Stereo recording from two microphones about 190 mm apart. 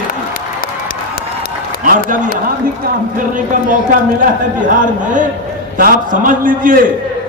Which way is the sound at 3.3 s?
45° right (ahead or behind).